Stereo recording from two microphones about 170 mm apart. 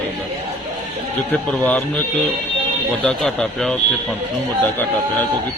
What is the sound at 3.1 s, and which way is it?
Speech, 5° left (ahead or behind).